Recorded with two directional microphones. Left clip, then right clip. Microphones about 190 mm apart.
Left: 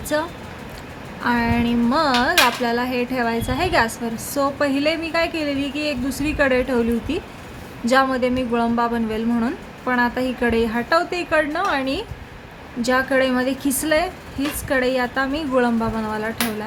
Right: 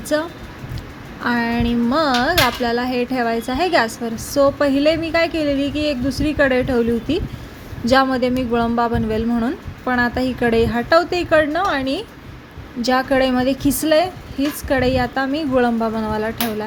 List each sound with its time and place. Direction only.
0.1 s speech: 15° right (ahead or behind)